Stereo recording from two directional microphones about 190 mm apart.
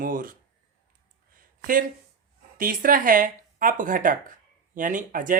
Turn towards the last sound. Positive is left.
turn(degrees=-45)  # may be behind; listen again after turning